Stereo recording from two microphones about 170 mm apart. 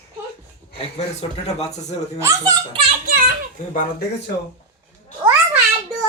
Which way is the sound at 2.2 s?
20° right (ahead or behind).